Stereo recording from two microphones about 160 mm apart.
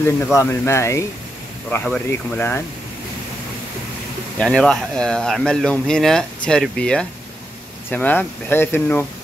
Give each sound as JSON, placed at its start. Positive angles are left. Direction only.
{"t": 0.4, "sound": "speech", "side_deg": 15}
{"t": 4.4, "sound": "speech", "side_deg": 5}